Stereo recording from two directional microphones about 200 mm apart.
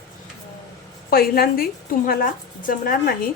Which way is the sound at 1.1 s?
50° left (ahead or behind).